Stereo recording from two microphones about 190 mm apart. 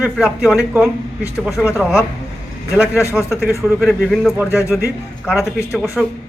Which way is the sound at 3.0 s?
15° left (ahead or behind).